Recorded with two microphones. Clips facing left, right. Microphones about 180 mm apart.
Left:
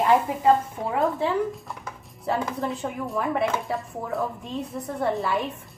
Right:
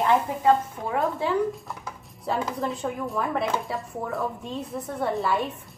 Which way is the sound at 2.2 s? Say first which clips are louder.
Left 1 dB; centre (ahead or behind).